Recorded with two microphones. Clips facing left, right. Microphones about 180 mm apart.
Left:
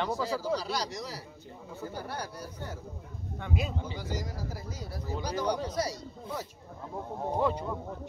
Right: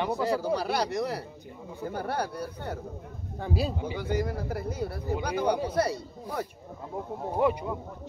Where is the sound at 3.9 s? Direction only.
60° right (ahead or behind).